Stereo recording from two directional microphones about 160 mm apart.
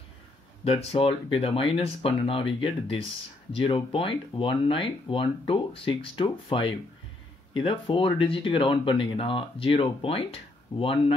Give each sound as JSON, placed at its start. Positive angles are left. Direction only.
{"t": 0.7, "sound": "speech", "side_deg": 35}